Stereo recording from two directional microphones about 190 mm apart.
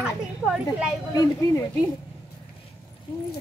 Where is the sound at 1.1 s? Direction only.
20° left (ahead or behind).